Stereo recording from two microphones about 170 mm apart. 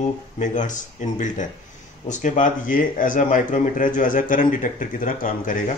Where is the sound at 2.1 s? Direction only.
45° left (ahead or behind).